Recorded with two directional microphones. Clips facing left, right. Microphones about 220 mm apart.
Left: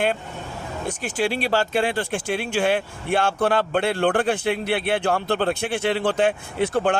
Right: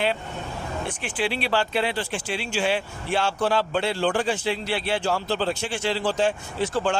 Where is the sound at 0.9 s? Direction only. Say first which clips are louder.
Left 5 dB; 45° left (ahead or behind).